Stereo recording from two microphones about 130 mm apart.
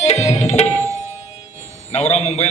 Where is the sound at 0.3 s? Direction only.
60° left (ahead or behind).